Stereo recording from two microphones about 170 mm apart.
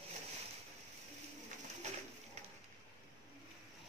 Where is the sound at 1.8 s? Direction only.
45° right (ahead or behind).